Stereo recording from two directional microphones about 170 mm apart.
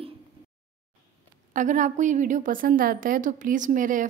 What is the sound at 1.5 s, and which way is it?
A woman's voice, 50° right (ahead or behind).